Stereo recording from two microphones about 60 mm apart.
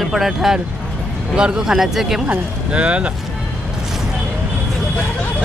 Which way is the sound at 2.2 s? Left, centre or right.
Right.